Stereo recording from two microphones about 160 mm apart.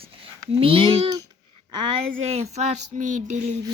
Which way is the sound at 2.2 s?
45° right (ahead or behind).